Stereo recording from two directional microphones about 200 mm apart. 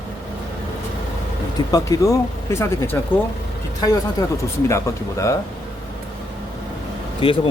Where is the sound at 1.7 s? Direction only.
15° left (ahead or behind).